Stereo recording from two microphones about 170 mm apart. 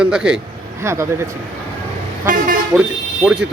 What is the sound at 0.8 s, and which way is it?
Speech, 15° right (ahead or behind).